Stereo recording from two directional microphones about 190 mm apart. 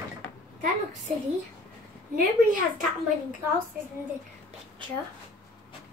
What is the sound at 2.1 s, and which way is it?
Speech, 45° right (ahead or behind).